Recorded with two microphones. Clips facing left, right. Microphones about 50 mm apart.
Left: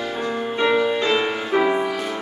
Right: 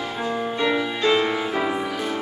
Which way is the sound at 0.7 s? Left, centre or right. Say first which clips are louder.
Left 1 dB; centre.